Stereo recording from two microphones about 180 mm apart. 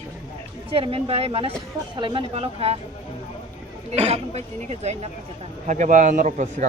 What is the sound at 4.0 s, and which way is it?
A man's voice, 35° right (ahead or behind).